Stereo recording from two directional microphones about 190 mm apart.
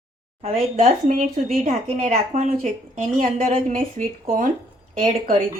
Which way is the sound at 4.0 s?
45° right (ahead or behind).